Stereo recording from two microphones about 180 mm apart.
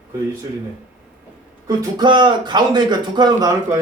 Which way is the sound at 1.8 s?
25° right (ahead or behind).